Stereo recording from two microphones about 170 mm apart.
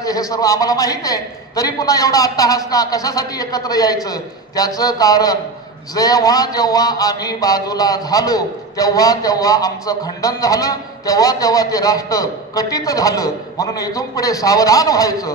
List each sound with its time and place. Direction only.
0.0 s a man's voice: 20° left (ahead or behind)